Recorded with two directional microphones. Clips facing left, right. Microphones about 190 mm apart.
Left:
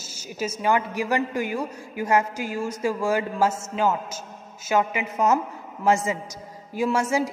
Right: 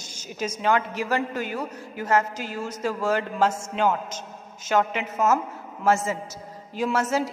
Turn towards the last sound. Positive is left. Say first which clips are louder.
# left 1 dB
turn(degrees=10)  # may be behind; listen again after turning